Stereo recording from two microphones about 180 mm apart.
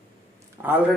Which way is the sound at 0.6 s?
15° right (ahead or behind).